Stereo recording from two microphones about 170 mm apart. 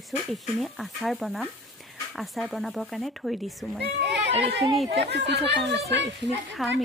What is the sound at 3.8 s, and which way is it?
Speech, 80° right.